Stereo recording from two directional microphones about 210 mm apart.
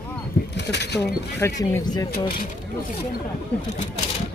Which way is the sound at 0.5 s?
55° left (ahead or behind).